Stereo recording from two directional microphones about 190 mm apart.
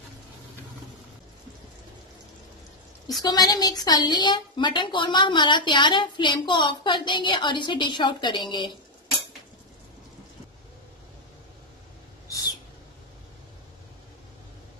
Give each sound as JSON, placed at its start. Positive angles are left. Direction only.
{"t": 3.2, "sound": "a woman's voice", "side_deg": 20}